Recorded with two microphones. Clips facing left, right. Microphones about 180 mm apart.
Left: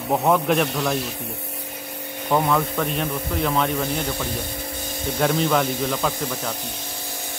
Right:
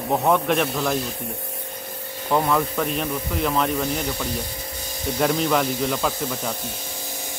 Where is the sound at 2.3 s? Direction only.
Centre (ahead or behind).